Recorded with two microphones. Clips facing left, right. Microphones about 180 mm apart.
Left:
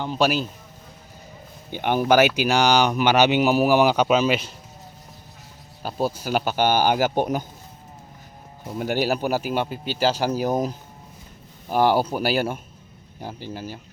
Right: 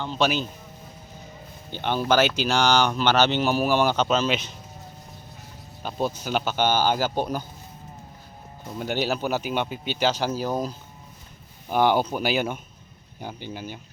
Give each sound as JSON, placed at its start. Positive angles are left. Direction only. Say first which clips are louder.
{"t": 0.0, "sound": "speech", "louder": "left 2 dB", "side_deg": 10}
{"t": 1.7, "sound": "speech", "louder": "left 4 dB", "side_deg": 15}
{"t": 5.8, "sound": "speech", "louder": "left 2 dB", "side_deg": 10}
{"t": 8.6, "sound": "speech", "louder": "left 3 dB", "side_deg": 10}
{"t": 10.3, "sound": "speech", "louder": "left 4 dB", "side_deg": 15}
{"t": 11.7, "sound": "speech", "louder": "left 2 dB", "side_deg": 5}